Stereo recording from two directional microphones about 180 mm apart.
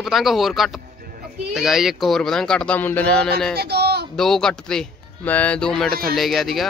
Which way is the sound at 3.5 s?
65° right (ahead or behind).